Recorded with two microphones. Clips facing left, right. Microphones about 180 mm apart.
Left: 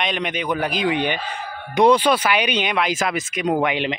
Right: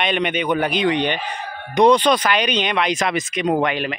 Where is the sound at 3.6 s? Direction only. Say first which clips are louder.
Even; 20° left (ahead or behind).